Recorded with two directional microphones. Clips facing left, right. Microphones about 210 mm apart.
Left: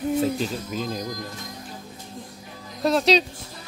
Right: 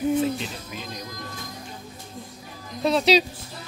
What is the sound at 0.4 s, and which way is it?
Speech, 40° left (ahead or behind).